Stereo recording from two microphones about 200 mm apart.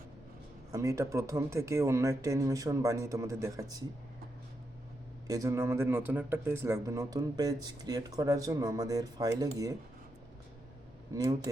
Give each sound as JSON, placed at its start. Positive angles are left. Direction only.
{"t": 0.7, "sound": "speech", "side_deg": -15}
{"t": 5.3, "sound": "speech", "side_deg": -15}